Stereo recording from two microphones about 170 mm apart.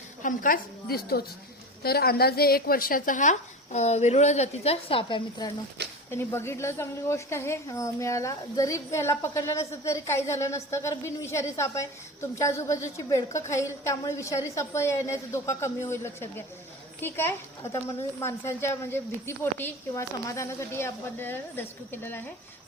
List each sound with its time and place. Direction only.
0.2 s a woman's voice: 50° left (ahead or behind); by 5.5 s 30° left (ahead or behind)
6.1 s speech: 15° left (ahead or behind)